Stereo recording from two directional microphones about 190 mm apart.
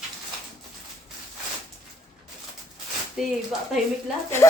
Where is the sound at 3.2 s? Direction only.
Centre (ahead or behind).